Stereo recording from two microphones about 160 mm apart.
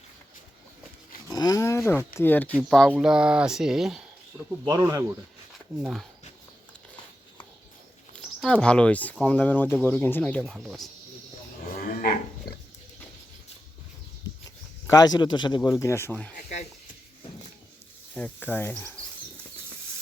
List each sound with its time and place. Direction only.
1.3 s speech: 20° left (ahead or behind); by 4.0 s 5° right (ahead or behind)
4.6 s speech: 25° right (ahead or behind)
5.8 s speech: centre (ahead or behind)
8.1 s speech: 5° left (ahead or behind)
10.5 s speech: 5° right (ahead or behind)
11.9 s dog: 60° left (ahead or behind)
14.8 s speech: 25° left (ahead or behind)
16.3 s speech: 50° left (ahead or behind)
18.1 s speech: 10° left (ahead or behind)